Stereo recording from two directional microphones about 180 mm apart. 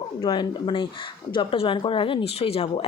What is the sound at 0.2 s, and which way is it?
Speech, 30° left (ahead or behind).